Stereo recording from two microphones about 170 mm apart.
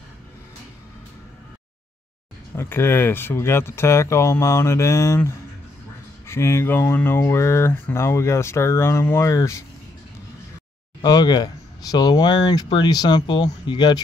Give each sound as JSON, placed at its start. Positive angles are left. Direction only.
{"t": 2.5, "sound": "speech", "side_deg": 15}
{"t": 11.0, "sound": "speech", "side_deg": 20}